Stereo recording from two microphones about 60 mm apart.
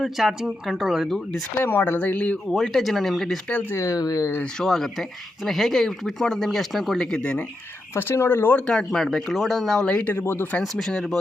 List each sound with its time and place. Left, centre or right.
0.0 s speech: centre
1.0 s speech: centre
1.5 s speech: left
2.6 s speech: centre
3.8 s speech: left
4.6 s speech: centre
8.1 s speech: left
8.6 s speech: centre
9.8 s speech: left
10.6 s speech: centre